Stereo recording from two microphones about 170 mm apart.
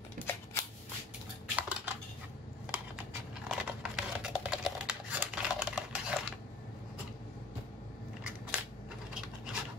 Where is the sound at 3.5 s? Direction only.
5° right (ahead or behind).